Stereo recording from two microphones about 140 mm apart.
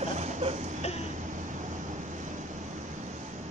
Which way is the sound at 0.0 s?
60° right (ahead or behind).